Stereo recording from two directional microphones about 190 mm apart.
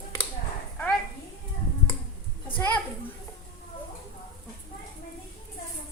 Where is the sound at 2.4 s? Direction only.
10° left (ahead or behind).